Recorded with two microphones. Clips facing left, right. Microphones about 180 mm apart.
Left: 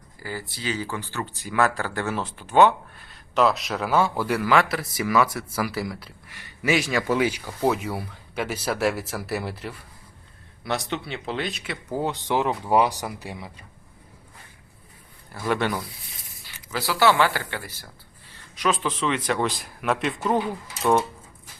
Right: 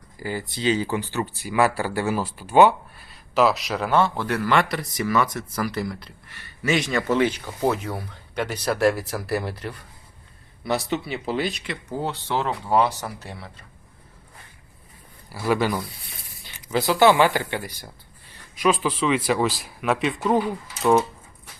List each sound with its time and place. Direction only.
0.2 s speech: 20° right (ahead or behind); by 11.9 s 5° left (ahead or behind)
12.0 s speech: 15° left (ahead or behind)
15.3 s speech: 5° right (ahead or behind)
16.4 s speech: 20° right (ahead or behind); by 20.4 s centre (ahead or behind)